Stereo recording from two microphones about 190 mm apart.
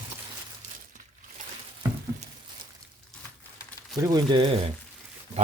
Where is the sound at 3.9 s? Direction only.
20° right (ahead or behind).